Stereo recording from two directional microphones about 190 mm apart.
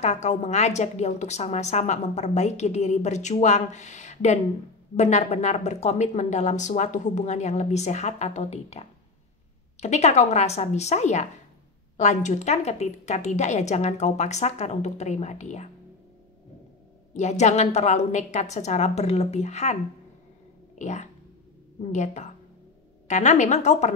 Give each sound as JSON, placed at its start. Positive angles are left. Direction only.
{"t": 0.0, "sound": "a woman's voice", "side_deg": 35}
{"t": 17.1, "sound": "a woman's voice", "side_deg": 40}